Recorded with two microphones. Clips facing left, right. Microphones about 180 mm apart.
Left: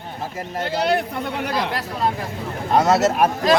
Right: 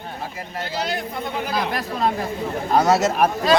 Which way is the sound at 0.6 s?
60° left (ahead or behind).